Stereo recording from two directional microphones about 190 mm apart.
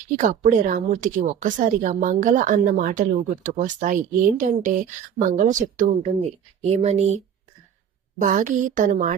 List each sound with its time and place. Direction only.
0.1 s a woman's voice: 45° right (ahead or behind)
8.2 s speech: 40° right (ahead or behind)